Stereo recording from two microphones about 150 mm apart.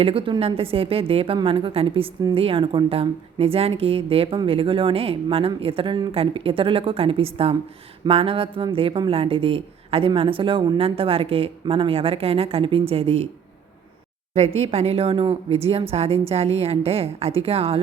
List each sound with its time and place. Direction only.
0.0 s a woman's voice: 35° right (ahead or behind)
14.3 s a woman's voice: 45° right (ahead or behind)